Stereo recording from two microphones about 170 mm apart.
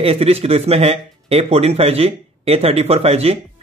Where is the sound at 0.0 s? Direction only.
35° right (ahead or behind).